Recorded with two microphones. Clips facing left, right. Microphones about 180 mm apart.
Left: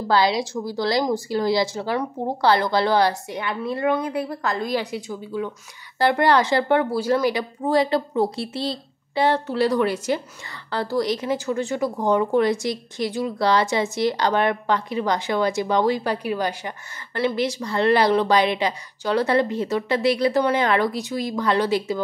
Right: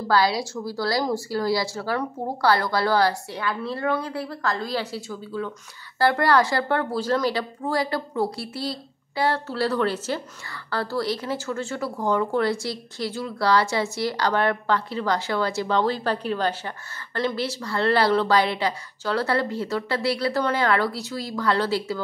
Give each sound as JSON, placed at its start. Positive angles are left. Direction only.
{"t": 0.1, "sound": "a woman's voice", "side_deg": 20}